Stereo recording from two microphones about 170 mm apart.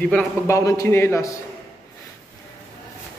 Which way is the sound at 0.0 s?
10° left (ahead or behind).